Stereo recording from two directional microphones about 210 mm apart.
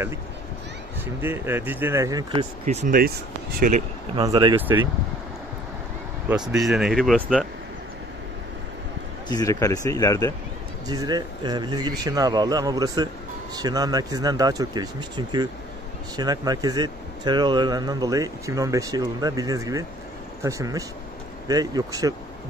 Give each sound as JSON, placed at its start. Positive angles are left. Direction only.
{"t": 1.2, "sound": "speech", "side_deg": -10}
{"t": 2.6, "sound": "speech", "side_deg": -35}
{"t": 4.1, "sound": "speech", "side_deg": -20}
{"t": 6.5, "sound": "speech", "side_deg": -5}
{"t": 9.3, "sound": "speech", "side_deg": 15}
{"t": 10.9, "sound": "speech", "side_deg": -20}